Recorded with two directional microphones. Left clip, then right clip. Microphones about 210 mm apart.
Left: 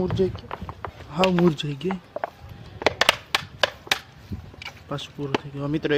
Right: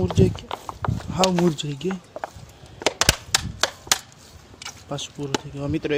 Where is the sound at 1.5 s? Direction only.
Centre (ahead or behind).